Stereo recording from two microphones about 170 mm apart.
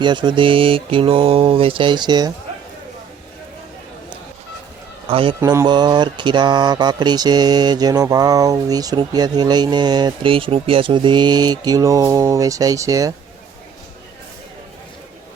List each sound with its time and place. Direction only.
0.0 s speech: 25° right (ahead or behind)
5.0 s speech: 30° right (ahead or behind)
5.4 s speech: 15° right (ahead or behind)
5.6 s mantra: 25° right (ahead or behind)